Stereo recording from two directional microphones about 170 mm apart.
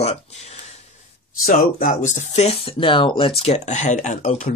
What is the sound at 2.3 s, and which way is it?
Speech, 40° left (ahead or behind).